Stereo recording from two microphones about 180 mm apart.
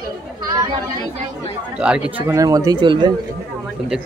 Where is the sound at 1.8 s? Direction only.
5° right (ahead or behind); by 3.1 s 25° right (ahead or behind).